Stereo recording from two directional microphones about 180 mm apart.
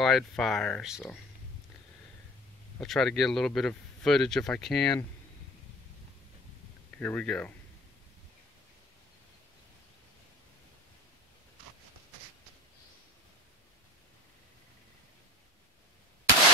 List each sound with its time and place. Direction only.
0.0 s speech: centre (ahead or behind)
2.8 s speech: centre (ahead or behind)
7.0 s speech: 10° left (ahead or behind)